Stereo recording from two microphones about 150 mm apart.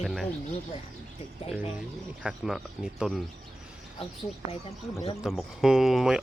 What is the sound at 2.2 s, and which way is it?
Speech, 5° right (ahead or behind).